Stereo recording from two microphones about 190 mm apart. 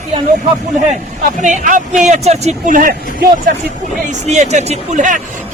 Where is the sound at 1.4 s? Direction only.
40° right (ahead or behind).